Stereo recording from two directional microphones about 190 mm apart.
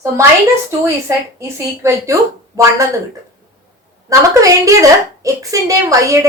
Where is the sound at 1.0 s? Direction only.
15° right (ahead or behind).